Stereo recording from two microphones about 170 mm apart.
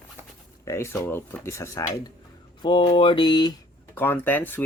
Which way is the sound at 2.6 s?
30° left (ahead or behind).